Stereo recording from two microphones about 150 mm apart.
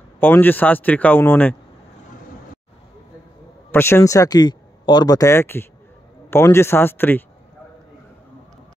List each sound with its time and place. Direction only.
0.2 s a man's voice: 10° left (ahead or behind)
3.7 s a man's voice: 15° left (ahead or behind)